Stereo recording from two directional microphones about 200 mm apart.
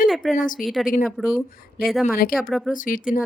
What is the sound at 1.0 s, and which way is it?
Speech, centre (ahead or behind).